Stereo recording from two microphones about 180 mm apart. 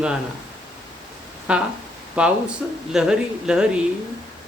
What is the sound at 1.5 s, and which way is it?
Speech, 5° right (ahead or behind).